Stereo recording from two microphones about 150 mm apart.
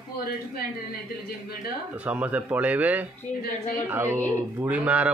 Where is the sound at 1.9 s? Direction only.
10° right (ahead or behind).